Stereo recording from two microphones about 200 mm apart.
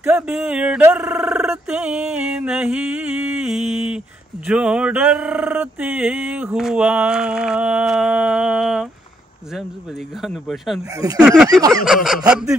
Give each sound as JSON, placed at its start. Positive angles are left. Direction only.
{"t": 0.0, "sound": "a sound", "side_deg": -5}
{"t": 10.2, "sound": "speech", "side_deg": 0}
{"t": 11.0, "sound": "speech", "side_deg": -20}
{"t": 11.8, "sound": "speech", "side_deg": 0}